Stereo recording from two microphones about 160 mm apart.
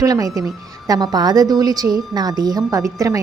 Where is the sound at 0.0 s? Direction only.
20° right (ahead or behind).